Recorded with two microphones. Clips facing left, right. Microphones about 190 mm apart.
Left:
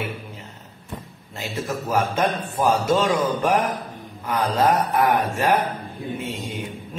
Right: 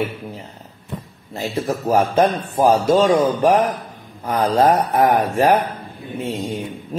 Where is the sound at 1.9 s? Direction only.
40° right (ahead or behind).